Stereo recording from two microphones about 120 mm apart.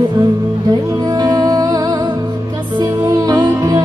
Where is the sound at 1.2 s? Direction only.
35° right (ahead or behind).